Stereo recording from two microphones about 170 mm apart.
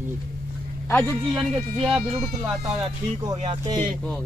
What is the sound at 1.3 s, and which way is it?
Speech, centre (ahead or behind).